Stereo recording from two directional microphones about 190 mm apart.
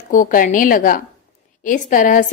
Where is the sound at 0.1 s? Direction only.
45° left (ahead or behind).